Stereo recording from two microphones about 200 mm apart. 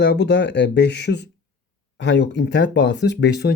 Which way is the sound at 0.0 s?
60° left (ahead or behind).